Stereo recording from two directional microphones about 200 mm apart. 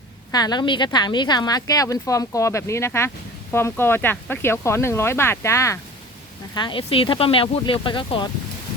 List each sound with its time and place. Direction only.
0.3 s speech: 20° left (ahead or behind)